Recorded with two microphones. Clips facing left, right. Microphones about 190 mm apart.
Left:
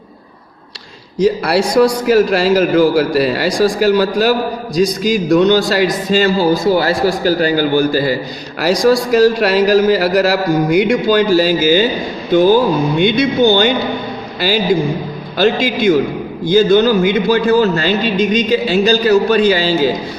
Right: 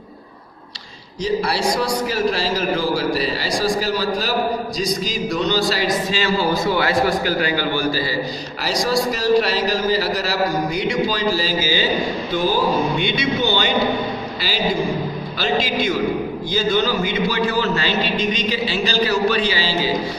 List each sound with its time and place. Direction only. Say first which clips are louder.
2.0 s a man's voice: left 9 dB; 65° left (ahead or behind)
5.3 s a man's voice: left 9 dB; 55° left (ahead or behind)
15.4 s a man's voice: left 7 dB; 50° left (ahead or behind)